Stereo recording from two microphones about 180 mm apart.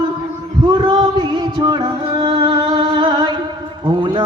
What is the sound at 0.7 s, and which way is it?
Music, 25° right (ahead or behind).